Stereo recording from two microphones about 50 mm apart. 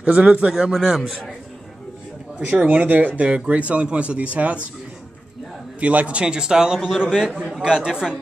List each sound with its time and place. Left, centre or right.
0.0 s speech: right
0.7 s a man's voice: centre
2.4 s speech: right
5.8 s a man's voice: right